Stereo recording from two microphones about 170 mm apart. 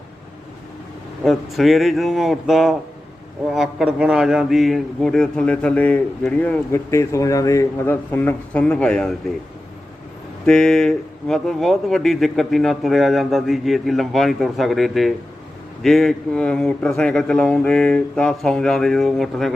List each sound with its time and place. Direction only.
1.2 s a man's voice: centre (ahead or behind)
10.4 s speech: 5° left (ahead or behind)